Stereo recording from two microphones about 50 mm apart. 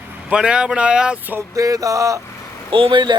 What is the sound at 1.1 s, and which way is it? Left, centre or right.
Speech, right.